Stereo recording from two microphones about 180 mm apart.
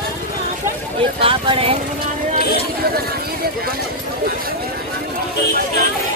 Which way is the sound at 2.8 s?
55° right (ahead or behind).